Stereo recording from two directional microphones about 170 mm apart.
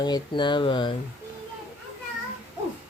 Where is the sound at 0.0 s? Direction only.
25° left (ahead or behind).